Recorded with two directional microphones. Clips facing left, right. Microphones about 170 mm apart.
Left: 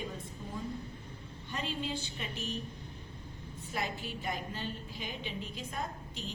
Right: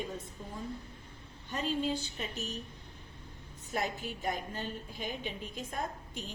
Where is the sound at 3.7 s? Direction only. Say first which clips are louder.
Right 2 dB; 45° right (ahead or behind).